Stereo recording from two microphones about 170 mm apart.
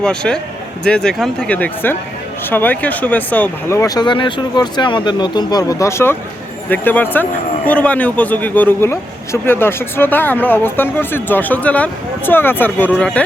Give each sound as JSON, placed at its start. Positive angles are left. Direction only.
{"t": 0.0, "sound": "a man's voice", "side_deg": 5}